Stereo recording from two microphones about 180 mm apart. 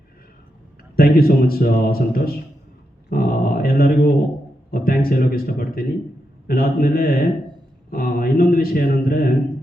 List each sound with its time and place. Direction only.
0.9 s a man's voice: 55° left (ahead or behind)
3.1 s a sound: 55° left (ahead or behind)
4.7 s a man's voice: 55° left (ahead or behind)